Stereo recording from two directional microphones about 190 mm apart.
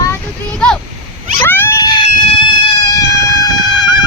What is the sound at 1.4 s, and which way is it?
Dog, 10° left (ahead or behind).